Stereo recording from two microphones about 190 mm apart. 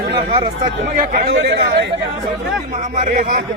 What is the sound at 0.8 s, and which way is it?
A man's voice, 45° right (ahead or behind).